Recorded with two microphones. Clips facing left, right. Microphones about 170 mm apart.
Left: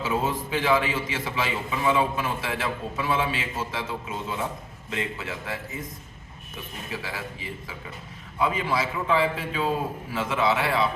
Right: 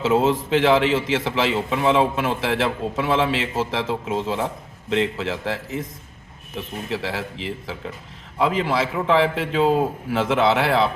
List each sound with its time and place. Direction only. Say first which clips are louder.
0.0 s a man's voice: right 8 dB; 90° right
6.9 s a man's voice: right 7 dB; 90° right